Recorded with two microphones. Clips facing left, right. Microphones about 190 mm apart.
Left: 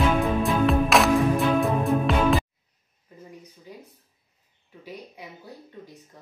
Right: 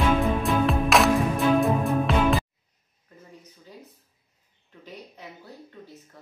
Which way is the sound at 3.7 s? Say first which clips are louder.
Left 1 dB; 15° left (ahead or behind).